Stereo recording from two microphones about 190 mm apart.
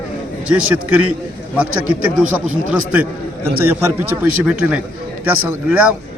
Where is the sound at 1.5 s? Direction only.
5° right (ahead or behind).